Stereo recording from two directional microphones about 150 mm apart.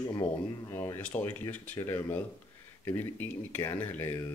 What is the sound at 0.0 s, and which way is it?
Speech, 25° left (ahead or behind).